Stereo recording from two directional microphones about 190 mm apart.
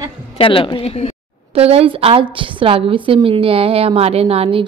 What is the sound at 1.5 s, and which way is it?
A woman's voice, 30° right (ahead or behind).